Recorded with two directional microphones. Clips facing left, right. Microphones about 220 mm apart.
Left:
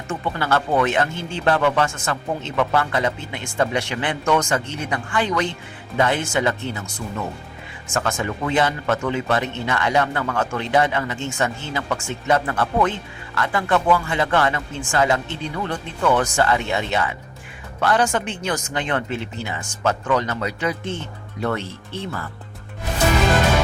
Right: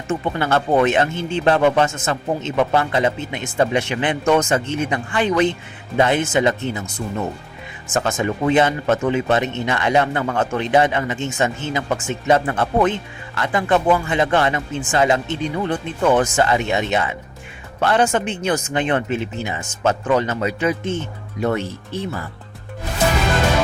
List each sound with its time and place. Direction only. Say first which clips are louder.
0.1 s speech: right 3 dB; 20° right (ahead or behind)